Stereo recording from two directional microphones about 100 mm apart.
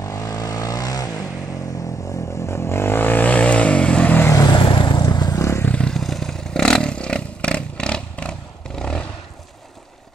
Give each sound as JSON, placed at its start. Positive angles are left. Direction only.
{"t": 0.0, "sound": "vehicle", "side_deg": 35}
{"t": 2.0, "sound": "vehicle", "side_deg": 30}
{"t": 4.5, "sound": "vehicle", "side_deg": 50}
{"t": 5.7, "sound": "vehicle", "side_deg": 10}